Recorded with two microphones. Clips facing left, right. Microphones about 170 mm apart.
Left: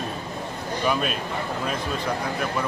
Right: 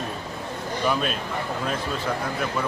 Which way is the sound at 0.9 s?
5° left (ahead or behind).